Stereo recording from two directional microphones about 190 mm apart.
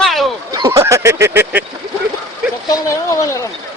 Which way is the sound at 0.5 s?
20° right (ahead or behind).